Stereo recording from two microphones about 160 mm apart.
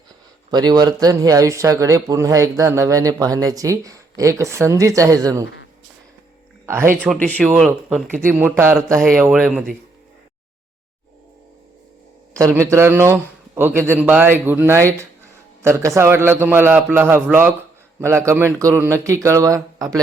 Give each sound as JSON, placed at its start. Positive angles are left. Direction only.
{"t": 0.5, "sound": "speech", "side_deg": -25}
{"t": 6.7, "sound": "a man's voice", "side_deg": -15}
{"t": 7.0, "sound": "speech", "side_deg": 10}
{"t": 7.4, "sound": "speech", "side_deg": -5}
{"t": 8.3, "sound": "a man's voice", "side_deg": -15}
{"t": 12.4, "sound": "a man's voice", "side_deg": -15}